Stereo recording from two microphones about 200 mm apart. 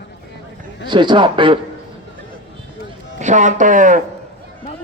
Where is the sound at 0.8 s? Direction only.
25° right (ahead or behind).